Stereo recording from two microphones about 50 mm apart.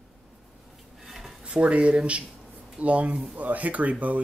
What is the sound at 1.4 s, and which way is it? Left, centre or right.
Speech, right.